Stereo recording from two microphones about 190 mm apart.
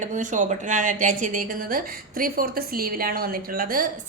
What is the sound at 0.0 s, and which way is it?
A woman's voice, 40° right (ahead or behind).